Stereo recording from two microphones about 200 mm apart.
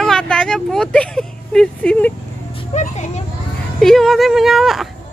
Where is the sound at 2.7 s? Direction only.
35° left (ahead or behind).